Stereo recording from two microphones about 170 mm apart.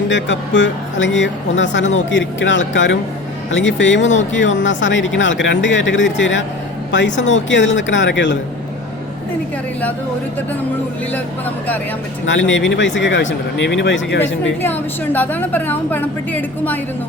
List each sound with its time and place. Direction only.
0.1 s speech: 90° left
12.2 s speech: 90° left
14.6 s a woman's voice: 10° left (ahead or behind)